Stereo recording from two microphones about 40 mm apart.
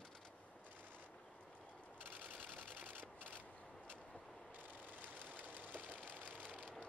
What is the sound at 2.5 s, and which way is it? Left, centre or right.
Camera, right.